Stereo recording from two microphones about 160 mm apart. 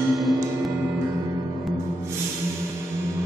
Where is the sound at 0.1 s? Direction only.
Centre (ahead or behind).